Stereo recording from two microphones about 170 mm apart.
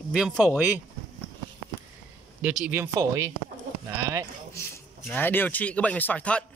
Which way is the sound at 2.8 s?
20° right (ahead or behind).